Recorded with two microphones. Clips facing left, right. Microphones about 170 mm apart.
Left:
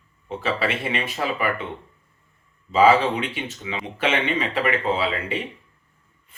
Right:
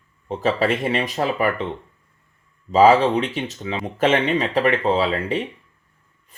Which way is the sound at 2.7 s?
40° right (ahead or behind).